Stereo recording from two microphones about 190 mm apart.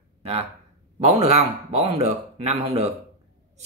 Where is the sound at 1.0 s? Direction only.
35° right (ahead or behind).